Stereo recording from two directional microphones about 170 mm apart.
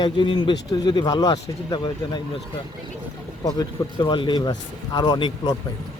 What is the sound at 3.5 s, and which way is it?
Speech, 25° left (ahead or behind).